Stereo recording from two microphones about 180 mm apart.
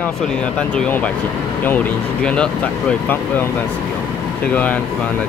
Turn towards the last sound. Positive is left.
turn(degrees=10)  # may be behind; listen again after turning